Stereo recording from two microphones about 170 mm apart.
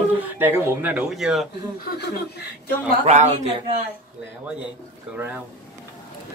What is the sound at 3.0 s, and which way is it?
Speech, 40° right (ahead or behind).